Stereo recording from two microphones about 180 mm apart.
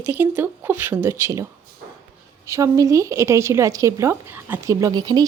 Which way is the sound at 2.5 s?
15° right (ahead or behind).